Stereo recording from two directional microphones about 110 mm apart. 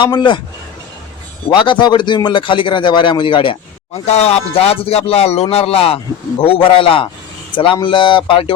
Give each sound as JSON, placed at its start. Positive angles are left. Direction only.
{"t": 0.0, "sound": "speech", "side_deg": 45}
{"t": 1.5, "sound": "speech", "side_deg": 45}
{"t": 4.0, "sound": "a man's voice", "side_deg": 80}